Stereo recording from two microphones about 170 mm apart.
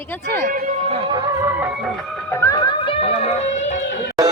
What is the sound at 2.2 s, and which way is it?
Music, 15° left (ahead or behind).